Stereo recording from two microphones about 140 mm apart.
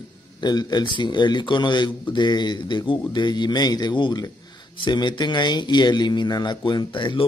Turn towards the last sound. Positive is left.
turn(degrees=35)  # may be behind; listen again after turning